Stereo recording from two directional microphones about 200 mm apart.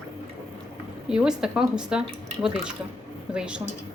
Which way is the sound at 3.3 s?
5° right (ahead or behind).